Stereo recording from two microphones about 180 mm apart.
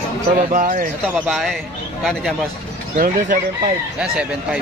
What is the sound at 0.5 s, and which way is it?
Speech, 45° right (ahead or behind).